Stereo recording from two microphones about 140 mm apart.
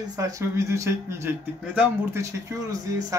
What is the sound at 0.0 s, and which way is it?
Speech, 25° right (ahead or behind).